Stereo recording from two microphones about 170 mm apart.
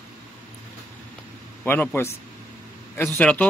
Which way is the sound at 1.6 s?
10° left (ahead or behind).